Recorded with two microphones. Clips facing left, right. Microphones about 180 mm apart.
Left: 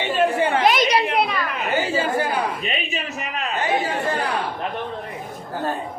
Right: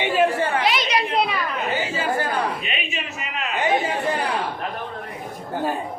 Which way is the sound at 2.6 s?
40° left (ahead or behind).